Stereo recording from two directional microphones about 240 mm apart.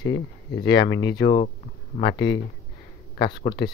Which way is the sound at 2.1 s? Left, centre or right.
Left.